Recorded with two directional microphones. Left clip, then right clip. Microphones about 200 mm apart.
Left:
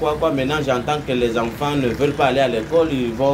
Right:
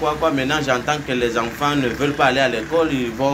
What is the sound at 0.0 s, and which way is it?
A man's voice, centre (ahead or behind).